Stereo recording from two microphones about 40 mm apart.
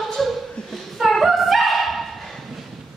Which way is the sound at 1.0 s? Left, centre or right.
Centre.